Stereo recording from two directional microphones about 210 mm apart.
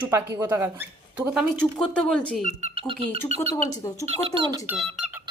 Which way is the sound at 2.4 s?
30° right (ahead or behind).